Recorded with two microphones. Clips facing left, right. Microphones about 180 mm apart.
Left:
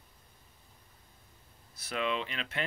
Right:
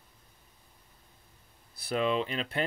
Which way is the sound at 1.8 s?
40° right (ahead or behind).